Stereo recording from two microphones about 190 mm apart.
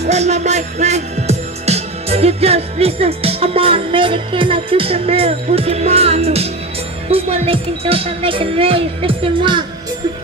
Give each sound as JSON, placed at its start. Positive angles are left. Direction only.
{"t": 0.0, "sound": "music", "side_deg": -35}
{"t": 7.1, "sound": "speech", "side_deg": -30}